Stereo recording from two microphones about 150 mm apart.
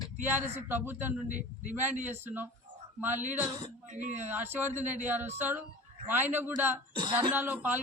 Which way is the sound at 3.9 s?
55° right (ahead or behind).